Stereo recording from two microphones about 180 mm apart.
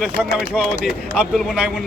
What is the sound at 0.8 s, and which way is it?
Speech, centre (ahead or behind).